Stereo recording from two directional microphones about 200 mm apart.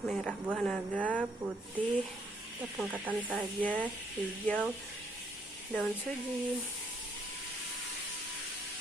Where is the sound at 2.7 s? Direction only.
10° right (ahead or behind).